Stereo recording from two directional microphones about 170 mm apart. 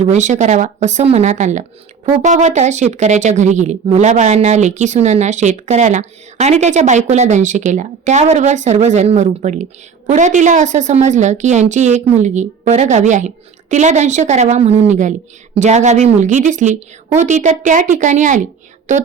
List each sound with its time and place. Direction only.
0.0 s speech: 45° right (ahead or behind)